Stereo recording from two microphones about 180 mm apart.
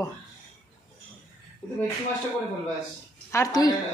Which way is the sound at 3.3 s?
20° left (ahead or behind).